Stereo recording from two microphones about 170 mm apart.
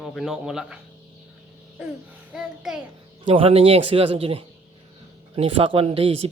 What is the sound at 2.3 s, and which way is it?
Speech, 5° right (ahead or behind).